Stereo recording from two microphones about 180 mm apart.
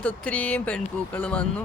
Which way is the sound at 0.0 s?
5° left (ahead or behind).